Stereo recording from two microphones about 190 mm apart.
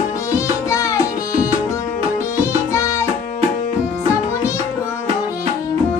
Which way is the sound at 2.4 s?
15° left (ahead or behind).